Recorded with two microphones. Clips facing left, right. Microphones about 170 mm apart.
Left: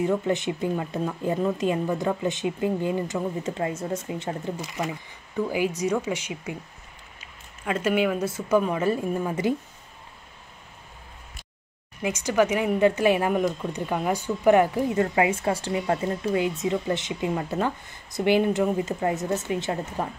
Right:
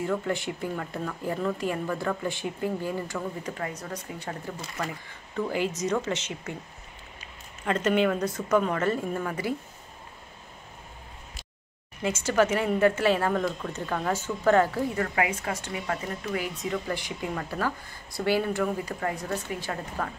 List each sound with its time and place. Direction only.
0.0 s a woman's voice: 20° left (ahead or behind)
7.6 s a woman's voice: 10° left (ahead or behind)
12.0 s a woman's voice: 15° left (ahead or behind)